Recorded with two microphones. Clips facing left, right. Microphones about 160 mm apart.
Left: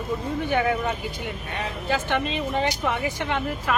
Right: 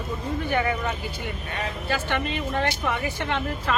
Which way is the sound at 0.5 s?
10° left (ahead or behind).